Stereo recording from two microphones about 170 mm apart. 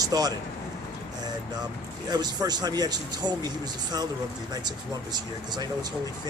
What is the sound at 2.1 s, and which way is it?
Speech, 25° right (ahead or behind).